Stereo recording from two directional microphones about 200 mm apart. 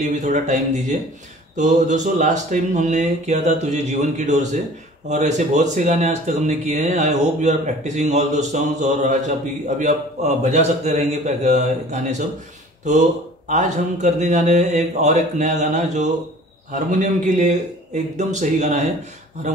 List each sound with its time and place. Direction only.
0.0 s speech: 35° right (ahead or behind)
13.5 s speech: 35° right (ahead or behind)